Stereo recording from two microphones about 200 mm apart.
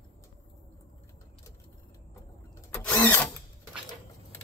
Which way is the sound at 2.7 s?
10° left (ahead or behind).